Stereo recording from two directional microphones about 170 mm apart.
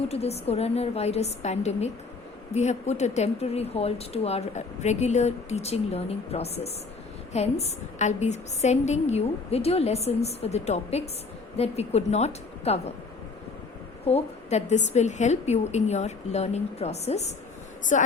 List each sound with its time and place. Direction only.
0.1 s a woman's voice: 40° left (ahead or behind)
14.1 s a woman's voice: 40° left (ahead or behind)